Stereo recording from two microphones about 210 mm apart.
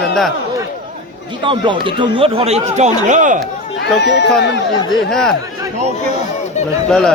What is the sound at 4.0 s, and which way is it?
Speech, 55° left (ahead or behind).